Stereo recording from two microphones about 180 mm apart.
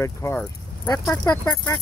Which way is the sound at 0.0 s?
15° left (ahead or behind).